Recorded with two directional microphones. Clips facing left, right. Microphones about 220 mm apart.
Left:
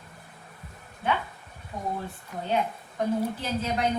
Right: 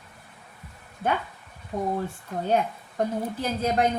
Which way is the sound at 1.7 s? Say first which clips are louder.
Right 6 dB; 50° right (ahead or behind).